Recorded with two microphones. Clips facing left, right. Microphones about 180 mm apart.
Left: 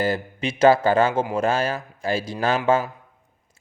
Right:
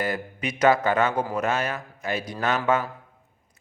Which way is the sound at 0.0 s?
30° left (ahead or behind).